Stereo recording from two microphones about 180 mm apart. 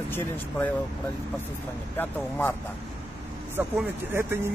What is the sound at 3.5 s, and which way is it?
Speech, 10° right (ahead or behind).